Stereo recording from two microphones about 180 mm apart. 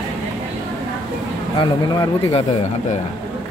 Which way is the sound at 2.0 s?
30° left (ahead or behind).